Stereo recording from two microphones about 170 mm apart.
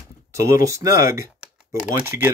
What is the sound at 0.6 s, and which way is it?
Speech, 20° right (ahead or behind).